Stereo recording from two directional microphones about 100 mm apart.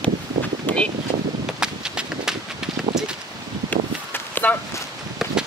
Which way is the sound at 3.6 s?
20° left (ahead or behind).